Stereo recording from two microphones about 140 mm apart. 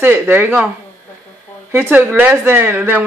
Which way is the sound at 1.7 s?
15° right (ahead or behind).